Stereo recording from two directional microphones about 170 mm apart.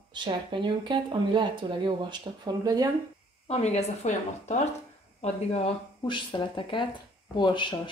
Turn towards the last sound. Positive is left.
turn(degrees=25)  # may be behind; listen again after turning